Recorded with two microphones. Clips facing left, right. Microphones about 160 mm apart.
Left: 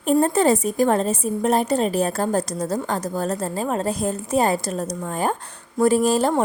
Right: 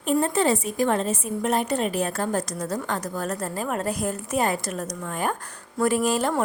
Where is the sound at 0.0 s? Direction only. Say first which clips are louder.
Left 4 dB; 40° left (ahead or behind).